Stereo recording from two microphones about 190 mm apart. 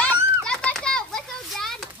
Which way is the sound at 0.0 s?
5° left (ahead or behind).